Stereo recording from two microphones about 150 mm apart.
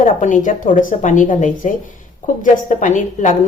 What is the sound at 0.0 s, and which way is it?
Speech, 60° left (ahead or behind).